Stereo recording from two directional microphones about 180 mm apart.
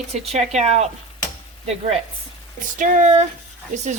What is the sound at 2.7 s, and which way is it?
Speech, 45° right (ahead or behind).